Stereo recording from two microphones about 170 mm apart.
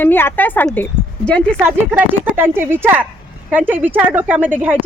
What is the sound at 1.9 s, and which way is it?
A woman's voice, 10° right (ahead or behind).